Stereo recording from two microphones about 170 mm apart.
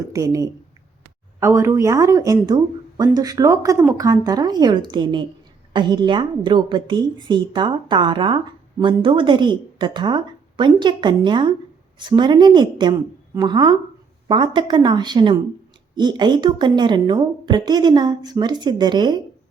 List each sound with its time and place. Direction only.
0.0 s a woman's voice: 20° right (ahead or behind)